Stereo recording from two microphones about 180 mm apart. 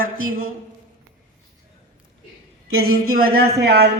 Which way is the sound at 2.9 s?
55° right (ahead or behind).